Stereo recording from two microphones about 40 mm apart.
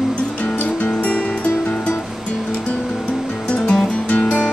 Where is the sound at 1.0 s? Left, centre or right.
Left.